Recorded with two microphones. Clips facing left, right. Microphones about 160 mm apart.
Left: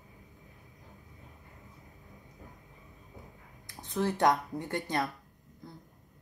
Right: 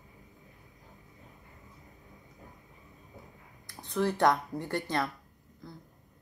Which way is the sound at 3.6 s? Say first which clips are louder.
Right 1 dB; 20° left (ahead or behind).